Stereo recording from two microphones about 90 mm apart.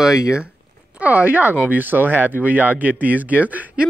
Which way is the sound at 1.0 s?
15° right (ahead or behind).